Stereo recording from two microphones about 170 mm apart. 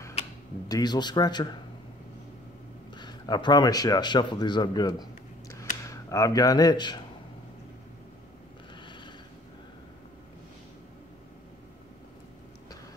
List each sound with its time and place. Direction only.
0.7 s a man's voice: 25° left (ahead or behind)
3.0 s a man's voice: 25° left (ahead or behind)